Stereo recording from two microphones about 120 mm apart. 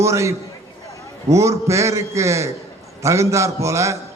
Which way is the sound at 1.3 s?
25° right (ahead or behind).